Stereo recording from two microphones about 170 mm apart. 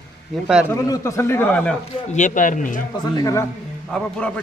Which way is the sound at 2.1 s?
45° left (ahead or behind).